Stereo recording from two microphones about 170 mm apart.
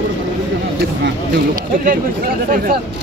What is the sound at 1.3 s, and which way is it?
Speech, 55° right (ahead or behind).